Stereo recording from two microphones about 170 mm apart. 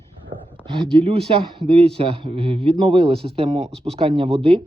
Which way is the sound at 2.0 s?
30° right (ahead or behind).